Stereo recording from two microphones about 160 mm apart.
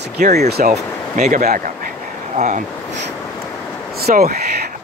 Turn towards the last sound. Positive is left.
turn(degrees=-70)  # may be behind; listen again after turning